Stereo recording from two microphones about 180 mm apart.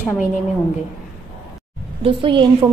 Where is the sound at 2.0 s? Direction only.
30° right (ahead or behind).